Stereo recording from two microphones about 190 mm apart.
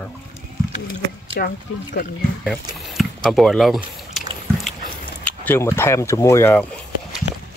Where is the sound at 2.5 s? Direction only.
Centre (ahead or behind).